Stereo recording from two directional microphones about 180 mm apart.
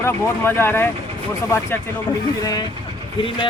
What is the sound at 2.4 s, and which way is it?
Speech, 20° left (ahead or behind).